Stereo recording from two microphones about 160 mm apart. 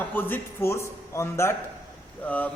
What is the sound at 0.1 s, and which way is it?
A man's voice, 10° left (ahead or behind).